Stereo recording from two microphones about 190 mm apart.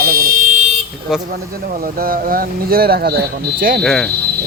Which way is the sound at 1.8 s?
50° right (ahead or behind).